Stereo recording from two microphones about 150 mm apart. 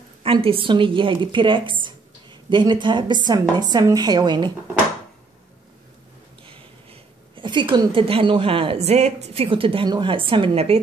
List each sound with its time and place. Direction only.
0.2 s a woman's voice: 40° right (ahead or behind)
6.4 s a woman's voice: 35° right (ahead or behind)